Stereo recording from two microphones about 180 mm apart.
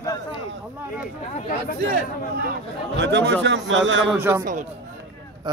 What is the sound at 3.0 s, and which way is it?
A man's voice, 75° right (ahead or behind).